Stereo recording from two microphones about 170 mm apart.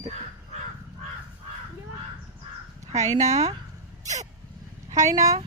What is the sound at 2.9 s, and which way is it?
Speech, 40° right (ahead or behind).